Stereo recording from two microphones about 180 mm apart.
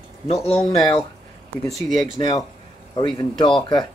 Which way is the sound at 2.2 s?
20° left (ahead or behind).